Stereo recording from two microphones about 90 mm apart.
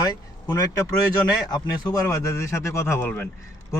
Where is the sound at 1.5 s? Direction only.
45° left (ahead or behind).